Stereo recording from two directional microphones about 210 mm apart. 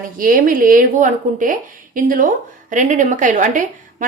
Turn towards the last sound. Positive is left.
turn(degrees=-35)  # may be behind; listen again after turning